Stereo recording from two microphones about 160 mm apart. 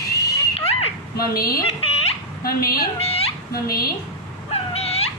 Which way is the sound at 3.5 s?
70° left (ahead or behind).